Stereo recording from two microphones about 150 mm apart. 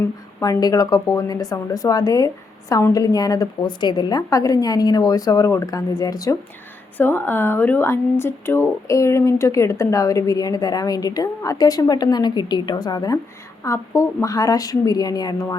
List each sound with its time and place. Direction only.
0.3 s a woman's voice: 20° left (ahead or behind)